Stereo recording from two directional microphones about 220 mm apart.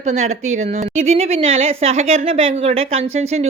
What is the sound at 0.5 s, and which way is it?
A woman's voice, 30° right (ahead or behind).